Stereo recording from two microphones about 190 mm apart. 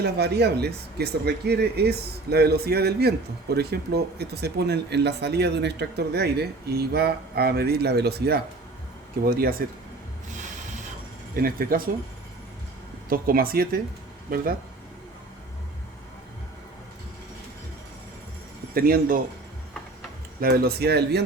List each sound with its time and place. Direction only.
0.0 s speech: 60° right (ahead or behind)
11.3 s speech: 50° right (ahead or behind)
13.1 s speech: 50° right (ahead or behind)
18.7 s speech: 50° right (ahead or behind)
20.4 s speech: 55° right (ahead or behind)